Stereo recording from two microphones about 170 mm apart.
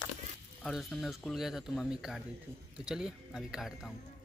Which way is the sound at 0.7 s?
Centre (ahead or behind).